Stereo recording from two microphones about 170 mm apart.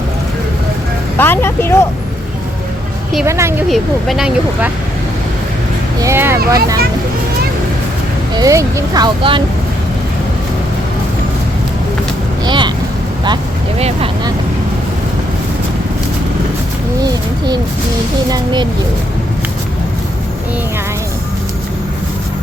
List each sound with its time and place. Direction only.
1.2 s speech: 15° left (ahead or behind)
3.2 s speech: 15° right (ahead or behind)
3.7 s speech: centre (ahead or behind)
6.0 s speech: 15° right (ahead or behind)
8.4 s speech: 20° right (ahead or behind)
12.5 s vehicle: 25° right (ahead or behind)
17.0 s speech: 25° right (ahead or behind)